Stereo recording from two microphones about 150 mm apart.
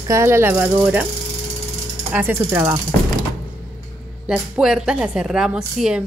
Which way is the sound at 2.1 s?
15° right (ahead or behind).